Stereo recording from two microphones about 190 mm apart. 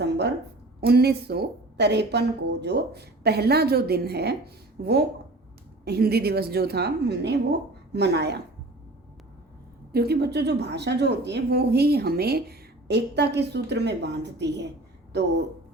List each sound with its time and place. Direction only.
0.0 s a sound: 60° right (ahead or behind)
0.8 s speech: 55° right (ahead or behind)
9.9 s speech: 55° right (ahead or behind)